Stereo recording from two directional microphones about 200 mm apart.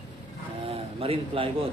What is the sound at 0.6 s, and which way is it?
Speech, 30° right (ahead or behind).